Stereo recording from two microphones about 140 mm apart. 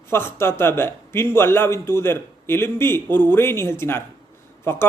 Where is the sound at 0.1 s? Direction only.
15° left (ahead or behind).